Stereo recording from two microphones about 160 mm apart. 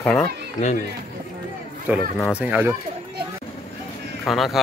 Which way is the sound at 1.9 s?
10° right (ahead or behind).